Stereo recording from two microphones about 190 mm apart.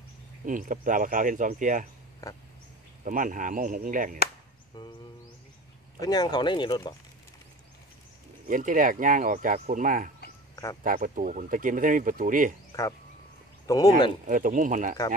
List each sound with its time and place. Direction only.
0.5 s speech: 45° right (ahead or behind)
3.0 s speech: 45° right (ahead or behind)
4.8 s speech: 20° left (ahead or behind)
5.9 s speech: 20° left (ahead or behind)
8.5 s speech: 45° right (ahead or behind)
10.5 s a sound: 20° left (ahead or behind)
10.8 s speech: 45° right (ahead or behind)
13.7 s speech: 20° left (ahead or behind)
14.2 s speech: 45° right (ahead or behind)